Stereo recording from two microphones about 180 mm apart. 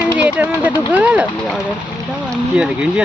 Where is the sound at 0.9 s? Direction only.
10° right (ahead or behind).